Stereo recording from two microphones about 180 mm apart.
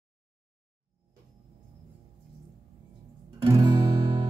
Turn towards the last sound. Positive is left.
turn(degrees=-25)  # may be behind; listen again after turning